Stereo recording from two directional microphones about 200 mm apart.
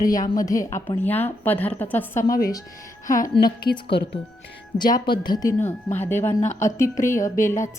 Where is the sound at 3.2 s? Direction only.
20° left (ahead or behind).